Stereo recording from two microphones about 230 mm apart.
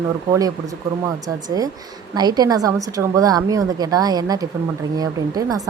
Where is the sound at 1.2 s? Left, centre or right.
Centre.